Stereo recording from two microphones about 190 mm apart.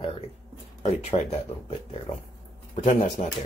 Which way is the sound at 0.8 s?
35° left (ahead or behind).